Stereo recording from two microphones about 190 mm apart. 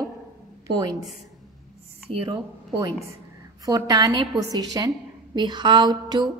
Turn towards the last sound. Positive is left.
turn(degrees=-20)  # may be behind; listen again after turning